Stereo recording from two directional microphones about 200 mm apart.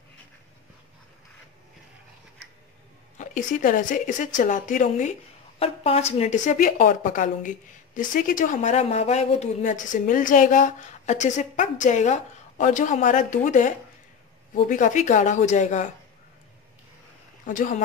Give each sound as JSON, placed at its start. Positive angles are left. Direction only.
{"t": 3.2, "sound": "speech", "side_deg": 40}
{"t": 17.5, "sound": "speech", "side_deg": 40}